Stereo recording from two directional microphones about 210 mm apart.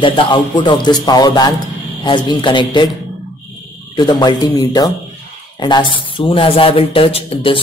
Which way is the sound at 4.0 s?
20° left (ahead or behind).